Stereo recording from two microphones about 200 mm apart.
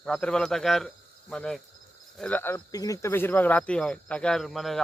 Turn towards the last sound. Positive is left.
turn(degrees=0)  # may be behind; listen again after turning